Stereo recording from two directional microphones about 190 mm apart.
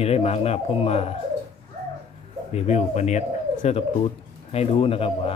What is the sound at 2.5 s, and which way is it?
Speech, 35° left (ahead or behind).